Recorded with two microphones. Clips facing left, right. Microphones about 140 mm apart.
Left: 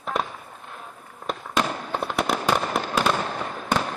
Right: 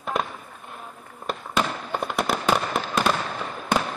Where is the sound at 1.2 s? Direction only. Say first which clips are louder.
Even; 5° right (ahead or behind).